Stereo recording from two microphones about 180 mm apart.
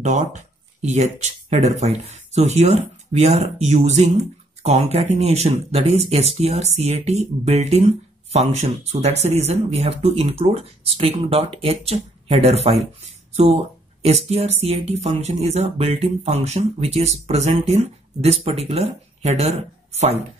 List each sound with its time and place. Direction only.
0.0 s speech: 40° right (ahead or behind)
14.0 s speech: 35° right (ahead or behind)